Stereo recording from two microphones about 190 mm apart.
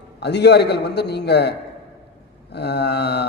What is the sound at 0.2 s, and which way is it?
Speech, 60° left (ahead or behind).